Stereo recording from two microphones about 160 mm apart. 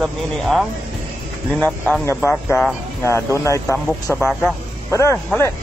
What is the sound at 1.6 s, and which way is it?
Speech, 10° left (ahead or behind).